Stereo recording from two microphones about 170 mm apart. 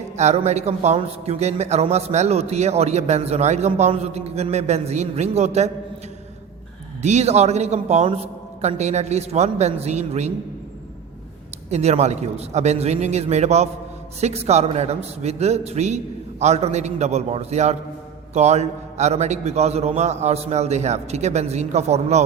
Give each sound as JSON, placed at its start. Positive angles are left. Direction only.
{"t": 0.2, "sound": "a man's voice", "side_deg": -40}
{"t": 7.0, "sound": "a man's voice", "side_deg": -40}
{"t": 11.7, "sound": "a man's voice", "side_deg": -40}